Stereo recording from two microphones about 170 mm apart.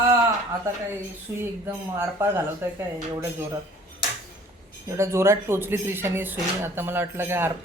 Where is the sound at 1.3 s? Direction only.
15° right (ahead or behind).